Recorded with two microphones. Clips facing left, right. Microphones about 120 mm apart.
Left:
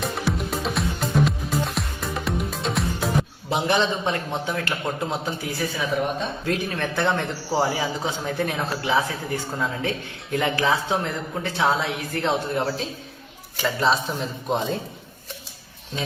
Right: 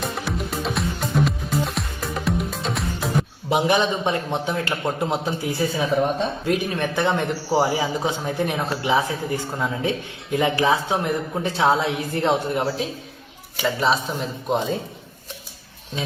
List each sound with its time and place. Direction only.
0.0 s music: centre (ahead or behind)
3.5 s a man's voice: 15° right (ahead or behind)
13.6 s speech: centre (ahead or behind)